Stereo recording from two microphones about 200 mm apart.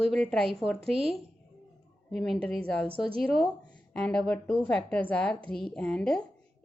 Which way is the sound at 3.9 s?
5° left (ahead or behind).